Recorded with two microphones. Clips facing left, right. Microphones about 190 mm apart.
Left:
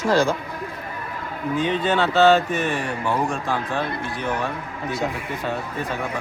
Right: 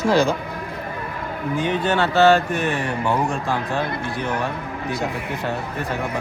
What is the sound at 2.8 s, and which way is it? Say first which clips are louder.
A man's voice: right 2 dB; 20° right (ahead or behind).